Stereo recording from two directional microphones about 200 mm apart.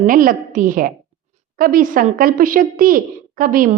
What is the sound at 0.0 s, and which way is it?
Speech, 45° right (ahead or behind).